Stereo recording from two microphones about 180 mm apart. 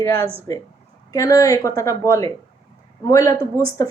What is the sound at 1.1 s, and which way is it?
A woman's voice, 20° left (ahead or behind).